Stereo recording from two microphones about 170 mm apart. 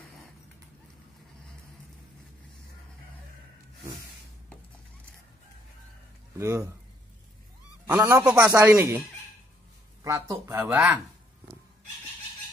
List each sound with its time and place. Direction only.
6.3 s speech: 15° right (ahead or behind)
7.8 s speech: 15° right (ahead or behind)
10.0 s speech: 15° right (ahead or behind)